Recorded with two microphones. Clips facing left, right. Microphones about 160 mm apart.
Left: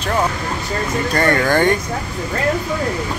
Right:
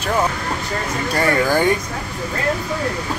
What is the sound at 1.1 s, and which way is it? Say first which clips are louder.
Speech: left 1 dB; 5° right (ahead or behind).